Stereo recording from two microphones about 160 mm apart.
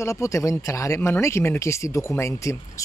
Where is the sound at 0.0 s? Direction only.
20° left (ahead or behind).